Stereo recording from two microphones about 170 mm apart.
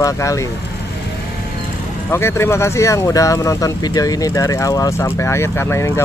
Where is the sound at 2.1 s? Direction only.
15° left (ahead or behind).